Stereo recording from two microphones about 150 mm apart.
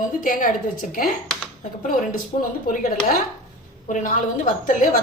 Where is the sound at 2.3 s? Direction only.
50° left (ahead or behind).